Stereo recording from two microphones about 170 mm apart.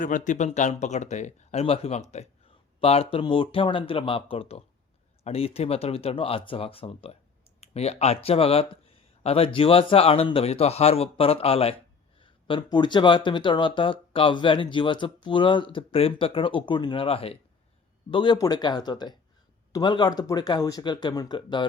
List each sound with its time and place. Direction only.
0.0 s speech: 50° left (ahead or behind)
12.2 s a sound: 30° left (ahead or behind)
12.7 s speech: 25° left (ahead or behind)